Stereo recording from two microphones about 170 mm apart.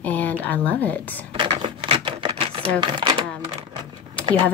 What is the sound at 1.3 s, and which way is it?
Typewriter, 30° right (ahead or behind).